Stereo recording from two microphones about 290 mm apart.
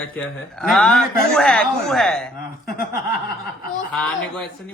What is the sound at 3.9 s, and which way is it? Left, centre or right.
Speech, centre.